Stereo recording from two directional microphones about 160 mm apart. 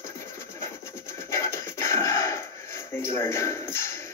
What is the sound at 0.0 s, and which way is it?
Rub, 15° left (ahead or behind).